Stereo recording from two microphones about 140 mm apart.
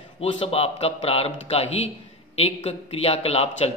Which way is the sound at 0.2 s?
40° left (ahead or behind).